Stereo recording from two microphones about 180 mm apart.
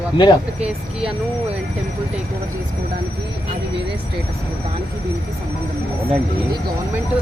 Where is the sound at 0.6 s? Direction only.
5° right (ahead or behind).